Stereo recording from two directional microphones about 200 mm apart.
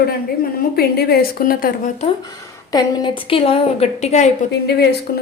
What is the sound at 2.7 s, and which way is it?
A woman's voice, 25° left (ahead or behind).